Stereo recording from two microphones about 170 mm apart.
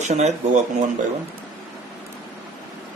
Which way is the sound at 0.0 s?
45° right (ahead or behind).